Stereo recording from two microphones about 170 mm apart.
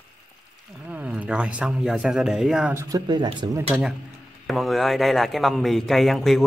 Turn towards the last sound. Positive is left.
turn(degrees=0)  # may be behind; listen again after turning